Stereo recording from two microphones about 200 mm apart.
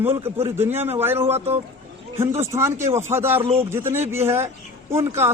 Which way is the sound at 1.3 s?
30° right (ahead or behind).